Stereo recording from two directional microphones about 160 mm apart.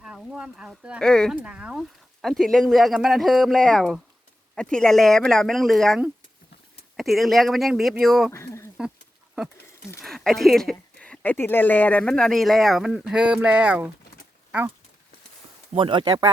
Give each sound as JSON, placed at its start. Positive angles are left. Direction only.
{"t": 0.0, "sound": "speech", "side_deg": -5}
{"t": 1.4, "sound": "speech", "side_deg": -5}
{"t": 8.3, "sound": "speech", "side_deg": 15}
{"t": 10.0, "sound": "speech", "side_deg": 0}
{"t": 15.7, "sound": "speech", "side_deg": -35}